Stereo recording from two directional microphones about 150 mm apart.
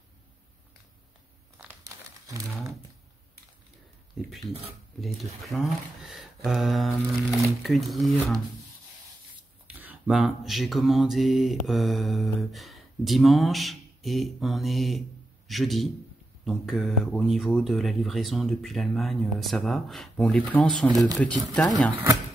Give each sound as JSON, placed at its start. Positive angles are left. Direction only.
{"t": 1.9, "sound": "crumpling", "side_deg": -20}
{"t": 4.2, "sound": "speech", "side_deg": -5}
{"t": 9.7, "sound": "mantra", "side_deg": -10}
{"t": 16.4, "sound": "speech", "side_deg": 0}